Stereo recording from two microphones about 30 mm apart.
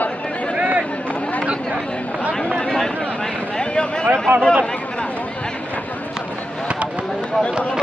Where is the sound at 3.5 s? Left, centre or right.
Left.